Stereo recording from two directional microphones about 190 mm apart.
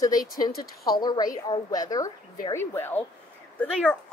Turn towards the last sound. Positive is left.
turn(degrees=5)  # may be behind; listen again after turning